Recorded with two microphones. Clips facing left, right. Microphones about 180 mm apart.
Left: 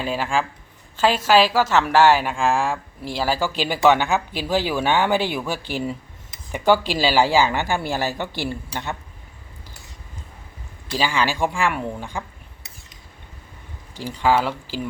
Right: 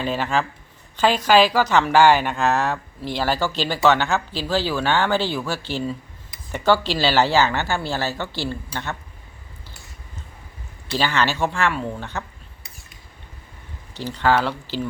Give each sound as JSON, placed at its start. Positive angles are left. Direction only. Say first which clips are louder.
{"t": 0.0, "sound": "a woman's voice", "louder": "right 1 dB", "side_deg": 5}
{"t": 10.9, "sound": "a woman's voice", "louder": "even", "side_deg": 10}
{"t": 13.9, "sound": "a woman's voice", "louder": "even", "side_deg": 10}